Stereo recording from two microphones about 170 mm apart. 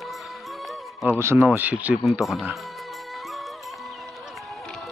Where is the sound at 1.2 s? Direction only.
15° right (ahead or behind).